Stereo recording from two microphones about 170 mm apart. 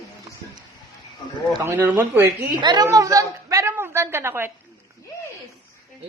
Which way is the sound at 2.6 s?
25° right (ahead or behind).